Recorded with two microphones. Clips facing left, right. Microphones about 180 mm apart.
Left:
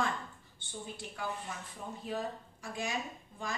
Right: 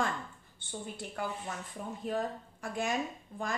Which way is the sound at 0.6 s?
55° right (ahead or behind).